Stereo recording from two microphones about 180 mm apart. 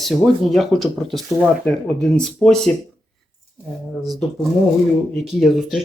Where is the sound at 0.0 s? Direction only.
Centre (ahead or behind).